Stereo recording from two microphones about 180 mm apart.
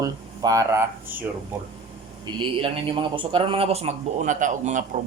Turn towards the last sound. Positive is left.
turn(degrees=-45)  # may be behind; listen again after turning